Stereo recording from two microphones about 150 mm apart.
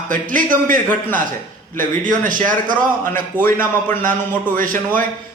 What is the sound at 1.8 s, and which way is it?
Speech, 60° right (ahead or behind).